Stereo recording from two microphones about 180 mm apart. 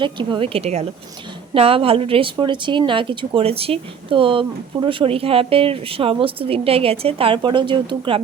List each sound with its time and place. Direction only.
0.0 s a woman's voice: 25° right (ahead or behind)